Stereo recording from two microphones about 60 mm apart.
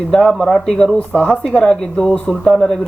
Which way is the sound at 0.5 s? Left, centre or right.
Centre.